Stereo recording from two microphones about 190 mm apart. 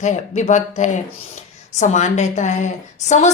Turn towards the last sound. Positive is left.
turn(degrees=40)  # may be behind; listen again after turning